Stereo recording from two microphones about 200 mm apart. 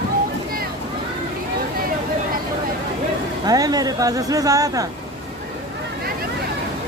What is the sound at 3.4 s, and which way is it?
Speech, 20° right (ahead or behind).